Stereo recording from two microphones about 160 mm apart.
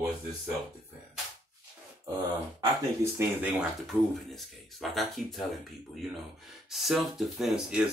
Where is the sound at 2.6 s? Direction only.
15° right (ahead or behind).